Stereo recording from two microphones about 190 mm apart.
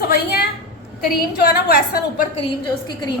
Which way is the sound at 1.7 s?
55° left (ahead or behind).